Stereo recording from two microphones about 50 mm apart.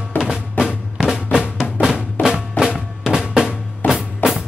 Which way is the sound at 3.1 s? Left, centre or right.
Centre.